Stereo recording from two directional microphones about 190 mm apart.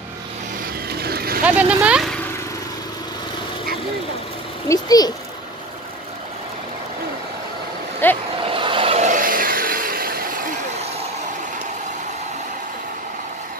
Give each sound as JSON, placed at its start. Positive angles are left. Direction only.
{"t": 0.8, "sound": "vehicle", "side_deg": -55}
{"t": 1.4, "sound": "speech", "side_deg": -5}
{"t": 4.6, "sound": "a child's voice", "side_deg": 20}
{"t": 8.0, "sound": "a sound", "side_deg": 10}
{"t": 8.5, "sound": "vehicle", "side_deg": -25}